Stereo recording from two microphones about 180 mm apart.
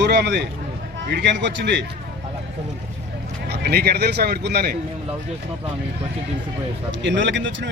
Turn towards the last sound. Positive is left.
turn(degrees=-90)